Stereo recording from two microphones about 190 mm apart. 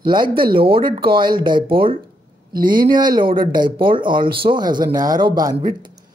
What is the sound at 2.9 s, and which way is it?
Speech, 20° right (ahead or behind).